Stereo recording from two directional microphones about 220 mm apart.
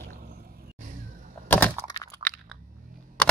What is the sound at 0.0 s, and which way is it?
Vehicle, 40° right (ahead or behind).